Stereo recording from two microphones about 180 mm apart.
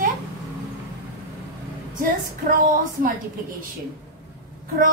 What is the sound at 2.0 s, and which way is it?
A woman's voice, 45° right (ahead or behind).